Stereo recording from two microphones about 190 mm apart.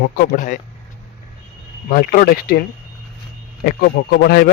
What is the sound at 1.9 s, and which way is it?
A man's voice, 50° left (ahead or behind).